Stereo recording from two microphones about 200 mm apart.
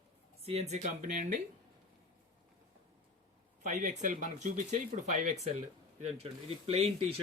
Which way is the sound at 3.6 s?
35° right (ahead or behind).